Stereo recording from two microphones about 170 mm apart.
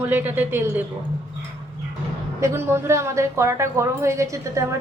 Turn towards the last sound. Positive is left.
turn(degrees=-15)  # may be behind; listen again after turning